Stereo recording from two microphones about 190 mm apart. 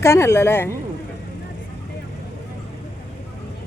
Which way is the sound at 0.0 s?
15° left (ahead or behind).